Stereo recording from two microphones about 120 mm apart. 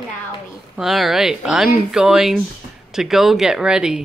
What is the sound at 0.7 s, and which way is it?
Speech, 5° right (ahead or behind).